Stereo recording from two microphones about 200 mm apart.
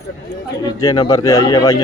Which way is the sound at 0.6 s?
20° left (ahead or behind).